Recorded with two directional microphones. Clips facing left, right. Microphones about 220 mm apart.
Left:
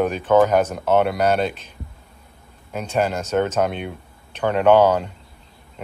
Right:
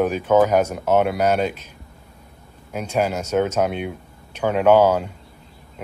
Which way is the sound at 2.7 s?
10° right (ahead or behind).